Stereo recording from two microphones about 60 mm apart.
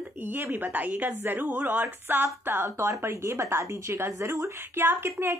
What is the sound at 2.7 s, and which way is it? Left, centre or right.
A woman's voice, right.